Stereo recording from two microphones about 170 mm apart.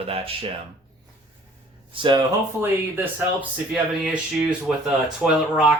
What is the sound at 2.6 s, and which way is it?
Speech, 10° right (ahead or behind).